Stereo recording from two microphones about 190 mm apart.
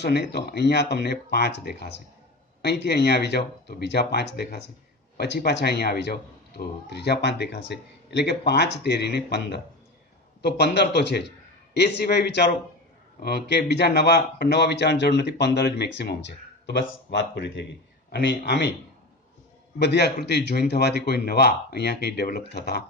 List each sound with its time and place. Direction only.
0.0 s speech: 60° left (ahead or behind)
19.8 s speech: 60° left (ahead or behind)